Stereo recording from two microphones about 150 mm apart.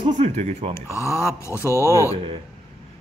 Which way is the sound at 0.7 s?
20° left (ahead or behind).